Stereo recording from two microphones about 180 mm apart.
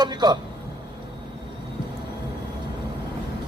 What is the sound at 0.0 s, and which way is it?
Speech, 25° right (ahead or behind).